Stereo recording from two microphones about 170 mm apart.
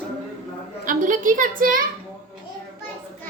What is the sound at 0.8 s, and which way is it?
A woman's voice, 50° right (ahead or behind).